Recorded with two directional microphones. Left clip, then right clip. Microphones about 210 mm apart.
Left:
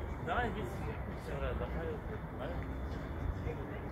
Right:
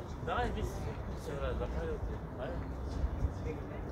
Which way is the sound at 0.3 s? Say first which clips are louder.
Even; 45° right (ahead or behind).